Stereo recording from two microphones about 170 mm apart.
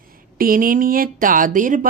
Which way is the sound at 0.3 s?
55° right (ahead or behind).